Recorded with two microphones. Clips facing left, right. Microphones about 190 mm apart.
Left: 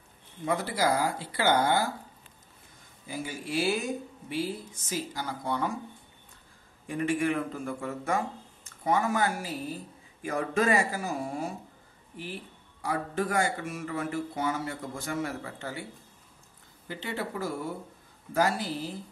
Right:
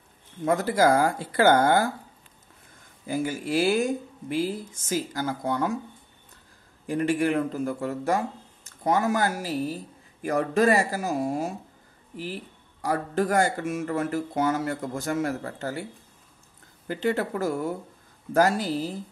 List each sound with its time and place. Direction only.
0.5 s speech: 45° right (ahead or behind)
3.1 s speech: 45° right (ahead or behind)
6.9 s a man's voice: 35° right (ahead or behind)
12.8 s speech: 40° right (ahead or behind)
16.8 s speech: 45° right (ahead or behind)